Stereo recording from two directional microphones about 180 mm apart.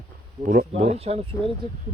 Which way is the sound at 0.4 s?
40° right (ahead or behind).